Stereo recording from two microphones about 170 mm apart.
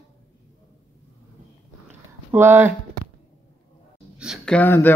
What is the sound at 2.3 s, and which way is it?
Speech, 15° right (ahead or behind).